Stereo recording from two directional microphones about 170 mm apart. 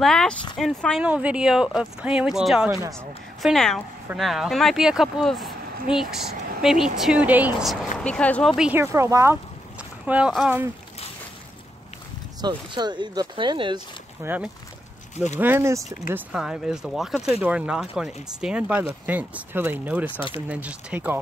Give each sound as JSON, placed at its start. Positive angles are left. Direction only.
{"t": 0.0, "sound": "speech", "side_deg": 5}
{"t": 2.7, "sound": "speech", "side_deg": -15}
{"t": 3.4, "sound": "speech", "side_deg": 5}
{"t": 6.6, "sound": "speech", "side_deg": -5}
{"t": 8.0, "sound": "speech", "side_deg": 5}
{"t": 12.4, "sound": "speech", "side_deg": -25}
{"t": 14.2, "sound": "speech", "side_deg": -10}